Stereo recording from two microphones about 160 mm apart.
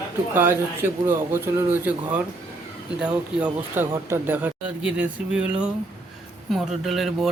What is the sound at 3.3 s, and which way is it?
Speech, 10° right (ahead or behind).